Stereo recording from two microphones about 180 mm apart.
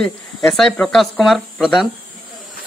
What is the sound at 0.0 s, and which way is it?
Speech, centre (ahead or behind).